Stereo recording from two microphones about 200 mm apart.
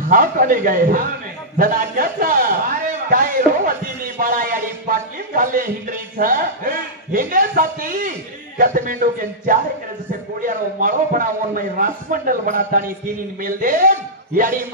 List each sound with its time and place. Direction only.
0.1 s a man's voice: 45° right (ahead or behind)